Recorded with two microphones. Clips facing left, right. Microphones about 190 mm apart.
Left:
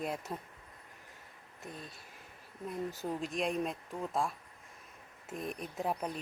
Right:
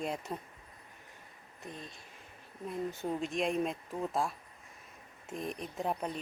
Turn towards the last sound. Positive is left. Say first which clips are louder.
# even
turn(degrees=0)  # may be behind; listen again after turning